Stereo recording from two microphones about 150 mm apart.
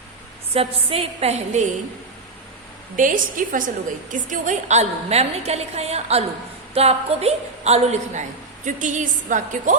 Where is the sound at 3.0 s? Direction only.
65° right (ahead or behind).